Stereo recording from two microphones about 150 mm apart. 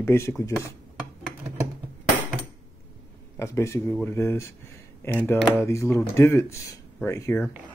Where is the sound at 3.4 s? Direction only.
20° left (ahead or behind).